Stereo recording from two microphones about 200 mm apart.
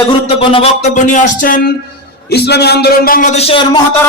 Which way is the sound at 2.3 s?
55° left (ahead or behind).